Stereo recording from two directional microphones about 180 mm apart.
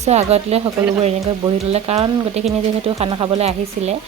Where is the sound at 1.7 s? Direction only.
35° right (ahead or behind).